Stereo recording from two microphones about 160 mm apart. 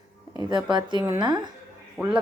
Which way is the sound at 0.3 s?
25° right (ahead or behind).